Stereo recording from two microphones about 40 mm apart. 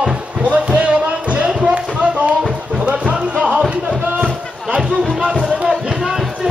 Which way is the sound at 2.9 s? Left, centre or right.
Right.